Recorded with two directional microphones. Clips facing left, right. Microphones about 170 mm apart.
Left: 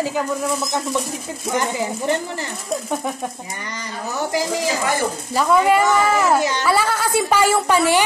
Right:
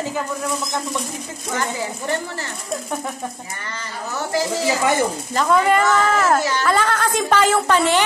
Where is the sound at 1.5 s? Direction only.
15° left (ahead or behind).